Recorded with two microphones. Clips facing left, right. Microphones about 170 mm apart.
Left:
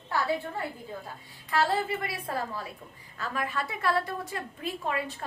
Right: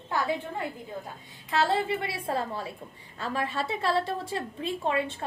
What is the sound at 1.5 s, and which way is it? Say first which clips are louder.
A woman's voice: right 1 dB; 25° right (ahead or behind).